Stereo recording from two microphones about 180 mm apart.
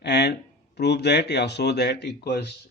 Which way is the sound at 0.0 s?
70° left (ahead or behind).